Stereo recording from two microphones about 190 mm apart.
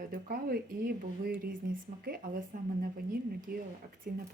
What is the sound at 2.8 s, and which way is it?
Speech, 50° right (ahead or behind).